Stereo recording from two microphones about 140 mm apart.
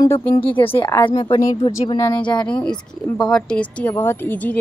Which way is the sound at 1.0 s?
35° left (ahead or behind).